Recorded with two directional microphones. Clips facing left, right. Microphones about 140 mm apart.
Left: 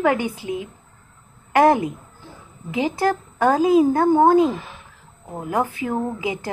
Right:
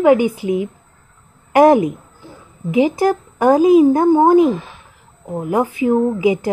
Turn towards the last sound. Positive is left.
turn(degrees=-15)  # may be behind; listen again after turning